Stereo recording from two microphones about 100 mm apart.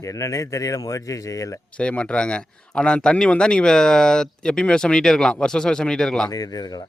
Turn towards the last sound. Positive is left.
turn(degrees=45)  # may be behind; listen again after turning